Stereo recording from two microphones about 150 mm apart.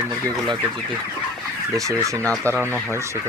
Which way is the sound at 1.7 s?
20° right (ahead or behind).